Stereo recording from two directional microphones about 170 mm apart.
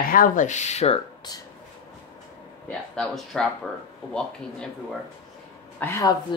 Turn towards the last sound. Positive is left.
turn(degrees=15)  # may be behind; listen again after turning